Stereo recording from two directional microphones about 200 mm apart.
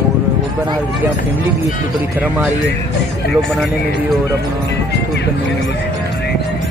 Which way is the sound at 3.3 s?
Centre (ahead or behind).